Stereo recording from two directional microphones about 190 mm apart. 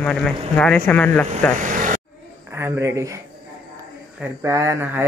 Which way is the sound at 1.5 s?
40° right (ahead or behind).